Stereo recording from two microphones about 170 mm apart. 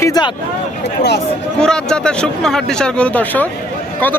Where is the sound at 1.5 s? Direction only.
5° left (ahead or behind).